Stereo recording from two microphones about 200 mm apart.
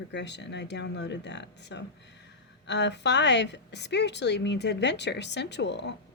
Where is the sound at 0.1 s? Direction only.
60° left (ahead or behind).